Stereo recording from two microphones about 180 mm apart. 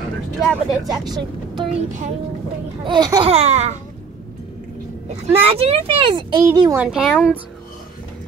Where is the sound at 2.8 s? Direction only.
25° right (ahead or behind).